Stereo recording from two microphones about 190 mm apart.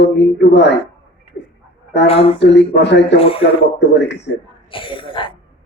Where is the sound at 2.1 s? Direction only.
30° left (ahead or behind).